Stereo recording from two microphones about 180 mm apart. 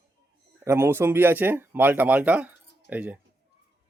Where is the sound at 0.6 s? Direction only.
15° right (ahead or behind).